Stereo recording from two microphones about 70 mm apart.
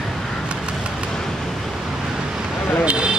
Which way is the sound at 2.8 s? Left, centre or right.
Centre.